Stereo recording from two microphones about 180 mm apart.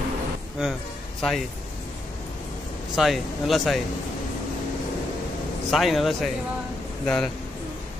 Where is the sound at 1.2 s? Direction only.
Centre (ahead or behind).